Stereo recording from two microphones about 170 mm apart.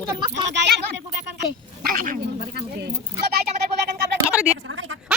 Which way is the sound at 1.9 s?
55° right (ahead or behind).